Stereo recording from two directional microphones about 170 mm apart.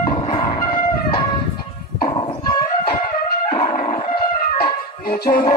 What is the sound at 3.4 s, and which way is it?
Music, 45° left (ahead or behind).